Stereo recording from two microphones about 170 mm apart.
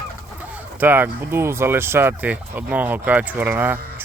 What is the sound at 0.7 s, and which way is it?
Speech, 10° right (ahead or behind).